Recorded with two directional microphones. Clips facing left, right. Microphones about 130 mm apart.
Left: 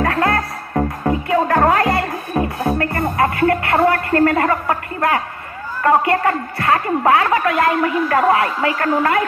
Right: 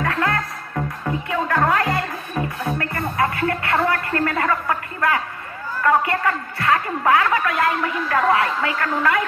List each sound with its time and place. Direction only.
0.0 s music: 40° left (ahead or behind)
3.6 s speech: 40° left (ahead or behind)
6.6 s speech: 35° left (ahead or behind)